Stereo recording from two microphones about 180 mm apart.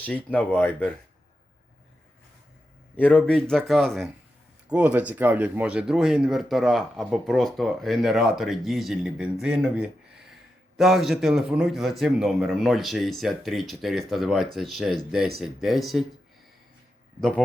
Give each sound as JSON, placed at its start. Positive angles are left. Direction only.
{"t": 0.0, "sound": "speech", "side_deg": 10}
{"t": 2.9, "sound": "speech", "side_deg": 5}
{"t": 17.2, "sound": "speech", "side_deg": 5}